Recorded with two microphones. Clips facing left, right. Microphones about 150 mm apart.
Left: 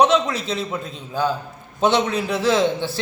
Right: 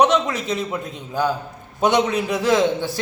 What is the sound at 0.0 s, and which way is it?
A man's voice, 10° right (ahead or behind).